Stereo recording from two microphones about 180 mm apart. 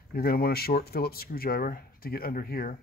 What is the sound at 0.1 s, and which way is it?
Speech, 55° left (ahead or behind).